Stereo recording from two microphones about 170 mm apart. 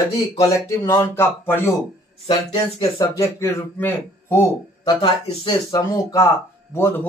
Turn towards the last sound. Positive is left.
turn(degrees=15)  # may be behind; listen again after turning